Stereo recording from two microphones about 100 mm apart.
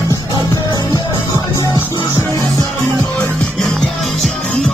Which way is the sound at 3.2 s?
10° left (ahead or behind).